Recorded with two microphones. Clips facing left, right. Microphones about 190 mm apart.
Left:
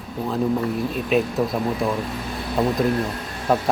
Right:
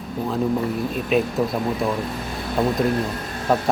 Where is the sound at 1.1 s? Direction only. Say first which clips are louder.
Even; centre (ahead or behind).